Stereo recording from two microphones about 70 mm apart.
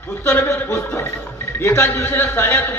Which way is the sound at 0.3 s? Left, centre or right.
Left.